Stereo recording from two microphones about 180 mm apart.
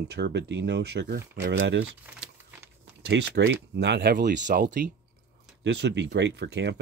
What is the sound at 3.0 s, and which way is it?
Speech, 70° right (ahead or behind).